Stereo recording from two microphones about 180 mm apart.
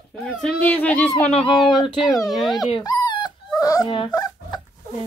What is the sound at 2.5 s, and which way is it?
Dog, 20° left (ahead or behind).